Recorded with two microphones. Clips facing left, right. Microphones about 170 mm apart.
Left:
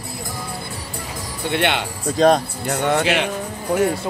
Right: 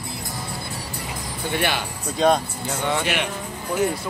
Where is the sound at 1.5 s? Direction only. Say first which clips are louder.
Left 4 dB; 70° left (ahead or behind); by 3.3 s 90° left.